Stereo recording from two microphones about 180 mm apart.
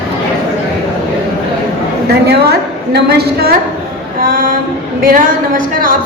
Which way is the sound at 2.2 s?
65° right (ahead or behind).